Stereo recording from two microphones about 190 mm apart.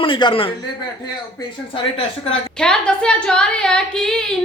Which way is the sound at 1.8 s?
30° left (ahead or behind).